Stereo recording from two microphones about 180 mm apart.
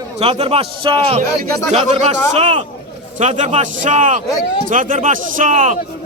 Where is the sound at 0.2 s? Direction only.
35° right (ahead or behind).